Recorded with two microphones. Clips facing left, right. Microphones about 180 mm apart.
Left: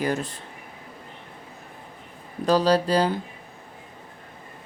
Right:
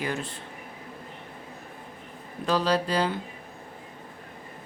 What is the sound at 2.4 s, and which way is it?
Speech, 40° left (ahead or behind).